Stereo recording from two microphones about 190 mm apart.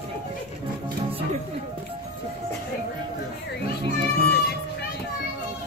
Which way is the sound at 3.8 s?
60° left (ahead or behind).